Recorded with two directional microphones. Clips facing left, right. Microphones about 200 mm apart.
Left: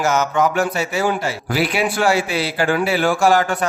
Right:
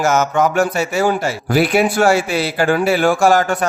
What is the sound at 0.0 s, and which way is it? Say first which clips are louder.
A man's voice: right 2 dB; 45° right (ahead or behind).